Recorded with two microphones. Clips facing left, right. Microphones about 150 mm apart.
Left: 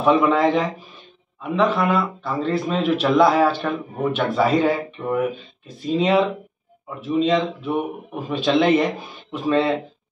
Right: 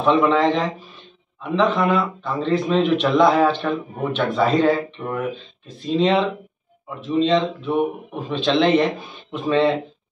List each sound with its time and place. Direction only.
0.0 s a man's voice: 10° left (ahead or behind)